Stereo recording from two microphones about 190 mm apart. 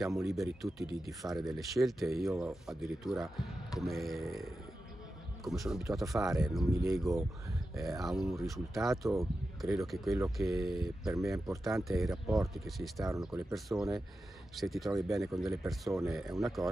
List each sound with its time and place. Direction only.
0.0 s speech: centre (ahead or behind)
6.7 s speech: 15° right (ahead or behind)
7.0 s speech: centre (ahead or behind)